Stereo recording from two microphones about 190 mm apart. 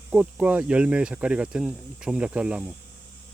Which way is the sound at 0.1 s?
5° right (ahead or behind).